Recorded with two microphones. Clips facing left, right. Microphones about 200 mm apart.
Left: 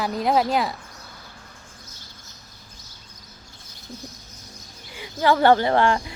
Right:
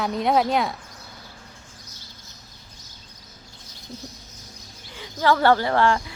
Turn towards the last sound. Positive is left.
turn(degrees=20)  # may be behind; listen again after turning